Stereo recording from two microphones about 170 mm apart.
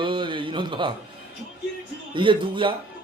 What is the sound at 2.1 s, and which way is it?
Speech, 30° right (ahead or behind).